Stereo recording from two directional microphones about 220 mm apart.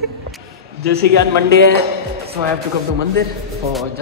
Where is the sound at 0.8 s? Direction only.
45° right (ahead or behind).